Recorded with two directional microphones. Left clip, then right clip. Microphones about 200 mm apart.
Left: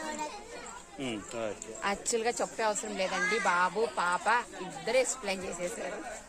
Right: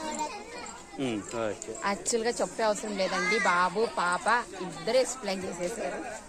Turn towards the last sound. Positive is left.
turn(degrees=15)  # may be behind; listen again after turning